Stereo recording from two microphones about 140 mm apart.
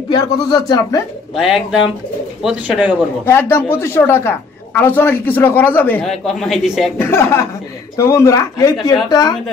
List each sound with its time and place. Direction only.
0.1 s speech: 30° left (ahead or behind)
1.3 s speech: centre (ahead or behind)
3.3 s a woman's voice: 15° left (ahead or behind); by 6.9 s centre (ahead or behind)
7.0 s a woman's voice: 15° left (ahead or behind)